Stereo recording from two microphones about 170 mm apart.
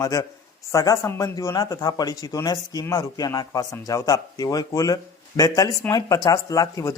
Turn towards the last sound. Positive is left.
turn(degrees=20)  # may be behind; listen again after turning